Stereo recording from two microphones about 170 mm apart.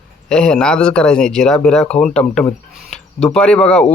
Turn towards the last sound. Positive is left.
turn(degrees=5)  # may be behind; listen again after turning